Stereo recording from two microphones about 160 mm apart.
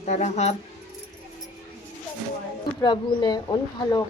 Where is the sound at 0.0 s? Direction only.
45° left (ahead or behind).